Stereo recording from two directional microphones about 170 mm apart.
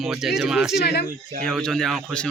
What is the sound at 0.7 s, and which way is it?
Speech, 75° left (ahead or behind).